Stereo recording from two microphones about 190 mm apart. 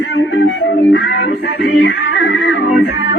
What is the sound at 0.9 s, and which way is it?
Music, 65° left (ahead or behind).